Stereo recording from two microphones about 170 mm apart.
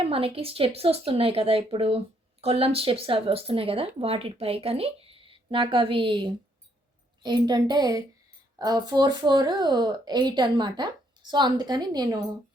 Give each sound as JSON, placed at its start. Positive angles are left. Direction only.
{"t": 0.0, "sound": "speech", "side_deg": -35}